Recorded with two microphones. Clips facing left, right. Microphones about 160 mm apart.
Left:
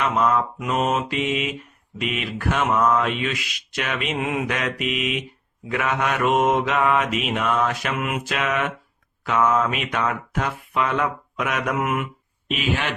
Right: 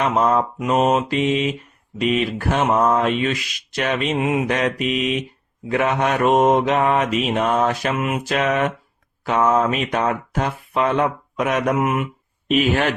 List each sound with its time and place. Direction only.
0.0 s speech: 35° right (ahead or behind)
4.2 s mantra: 20° right (ahead or behind)
4.4 s speech: 35° right (ahead or behind)
7.9 s mantra: 25° right (ahead or behind)
8.3 s speech: 40° right (ahead or behind)
11.8 s mantra: 20° right (ahead or behind)
12.5 s speech: 45° right (ahead or behind)